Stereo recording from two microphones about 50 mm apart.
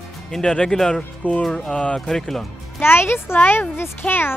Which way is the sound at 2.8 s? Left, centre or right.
Left.